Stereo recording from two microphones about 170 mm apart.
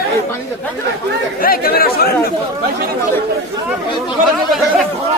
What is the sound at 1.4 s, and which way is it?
Speech, 60° left (ahead or behind).